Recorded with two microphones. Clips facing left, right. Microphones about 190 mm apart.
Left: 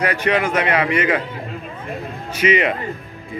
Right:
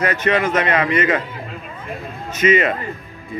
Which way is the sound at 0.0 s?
10° left (ahead or behind).